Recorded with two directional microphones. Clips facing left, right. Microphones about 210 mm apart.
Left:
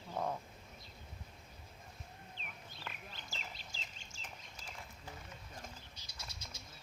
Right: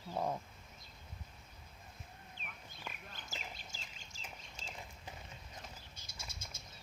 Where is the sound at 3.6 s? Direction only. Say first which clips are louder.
Even; 45° right (ahead or behind).